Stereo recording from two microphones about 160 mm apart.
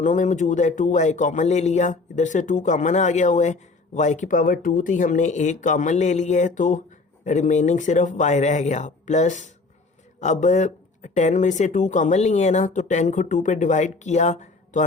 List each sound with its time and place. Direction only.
0.0 s speech: 50° left (ahead or behind)